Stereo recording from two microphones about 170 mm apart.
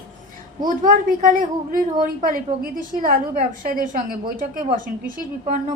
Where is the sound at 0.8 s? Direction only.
50° right (ahead or behind).